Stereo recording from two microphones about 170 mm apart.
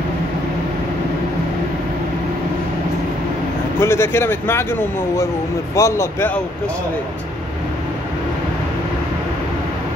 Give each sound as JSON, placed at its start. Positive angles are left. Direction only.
{"t": 3.8, "sound": "speech", "side_deg": 15}